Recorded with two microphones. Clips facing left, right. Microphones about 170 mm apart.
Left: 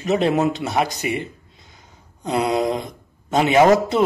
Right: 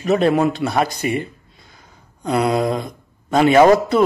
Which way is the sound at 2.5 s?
20° left (ahead or behind).